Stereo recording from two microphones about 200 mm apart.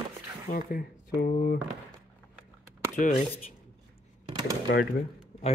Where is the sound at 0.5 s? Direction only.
45° left (ahead or behind).